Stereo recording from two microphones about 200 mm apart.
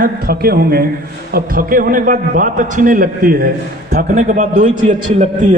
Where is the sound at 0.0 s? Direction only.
50° right (ahead or behind).